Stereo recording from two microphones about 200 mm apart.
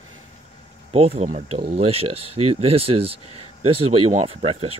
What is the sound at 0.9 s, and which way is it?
Speech, 30° right (ahead or behind).